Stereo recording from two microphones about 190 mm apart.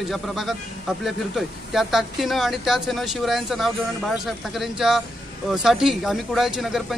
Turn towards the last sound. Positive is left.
turn(degrees=0)  # may be behind; listen again after turning